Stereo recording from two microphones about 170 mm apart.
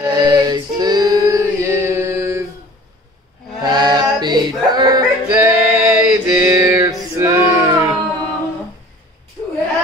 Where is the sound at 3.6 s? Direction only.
25° right (ahead or behind).